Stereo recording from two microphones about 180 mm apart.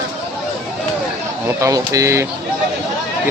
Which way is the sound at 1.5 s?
15° right (ahead or behind).